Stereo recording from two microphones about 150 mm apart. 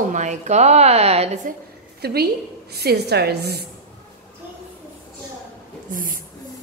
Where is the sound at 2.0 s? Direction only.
90° right.